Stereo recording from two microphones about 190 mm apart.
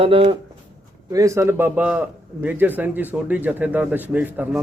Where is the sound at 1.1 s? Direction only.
15° right (ahead or behind).